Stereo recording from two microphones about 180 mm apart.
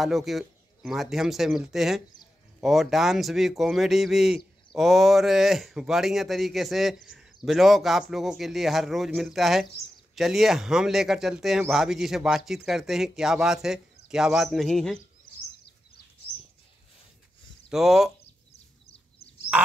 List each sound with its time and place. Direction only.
0.0 s speech: centre (ahead or behind)
17.6 s speech: centre (ahead or behind)
18.2 s chicken: 35° left (ahead or behind)